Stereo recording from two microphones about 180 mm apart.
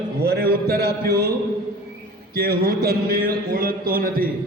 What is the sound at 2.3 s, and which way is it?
Speech, 55° right (ahead or behind).